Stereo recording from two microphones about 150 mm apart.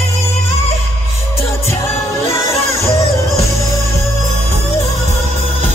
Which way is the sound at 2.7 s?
20° left (ahead or behind).